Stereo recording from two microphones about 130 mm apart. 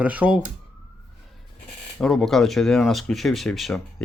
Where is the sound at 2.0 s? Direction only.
5° left (ahead or behind).